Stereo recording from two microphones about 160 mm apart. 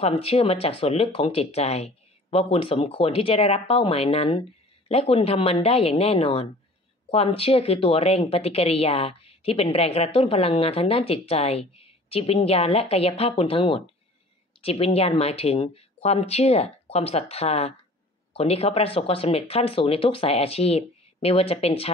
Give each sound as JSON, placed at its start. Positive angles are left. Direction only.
{"t": 0.0, "sound": "a woman's voice", "side_deg": 40}